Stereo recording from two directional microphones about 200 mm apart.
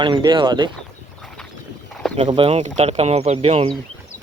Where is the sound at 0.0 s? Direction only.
25° right (ahead or behind).